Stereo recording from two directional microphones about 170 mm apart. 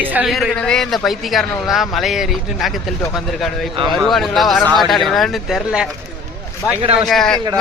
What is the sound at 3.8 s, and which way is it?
A man's voice, centre (ahead or behind).